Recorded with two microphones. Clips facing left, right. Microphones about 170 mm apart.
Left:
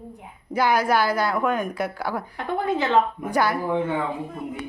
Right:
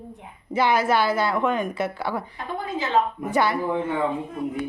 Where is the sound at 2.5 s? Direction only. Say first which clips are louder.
Left 5 dB; 65° left (ahead or behind).